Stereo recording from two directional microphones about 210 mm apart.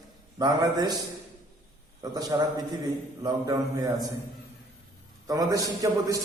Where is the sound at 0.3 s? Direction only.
20° right (ahead or behind).